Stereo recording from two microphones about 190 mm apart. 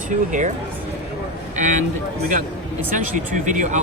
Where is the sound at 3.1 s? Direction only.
40° right (ahead or behind).